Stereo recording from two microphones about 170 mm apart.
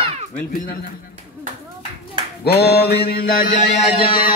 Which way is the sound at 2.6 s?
70° left (ahead or behind).